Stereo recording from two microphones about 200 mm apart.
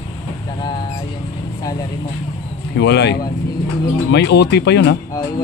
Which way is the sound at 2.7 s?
60° left (ahead or behind).